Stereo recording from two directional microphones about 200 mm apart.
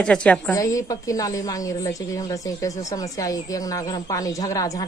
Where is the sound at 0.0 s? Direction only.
5° left (ahead or behind).